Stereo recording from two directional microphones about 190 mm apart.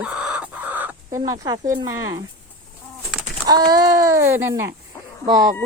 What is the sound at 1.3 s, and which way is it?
Speech, 20° right (ahead or behind).